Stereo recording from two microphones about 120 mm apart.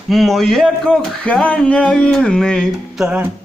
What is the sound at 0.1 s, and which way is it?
Speech, centre (ahead or behind).